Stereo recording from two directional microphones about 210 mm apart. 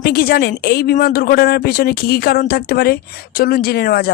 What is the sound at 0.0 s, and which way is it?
A man's voice, 45° left (ahead or behind).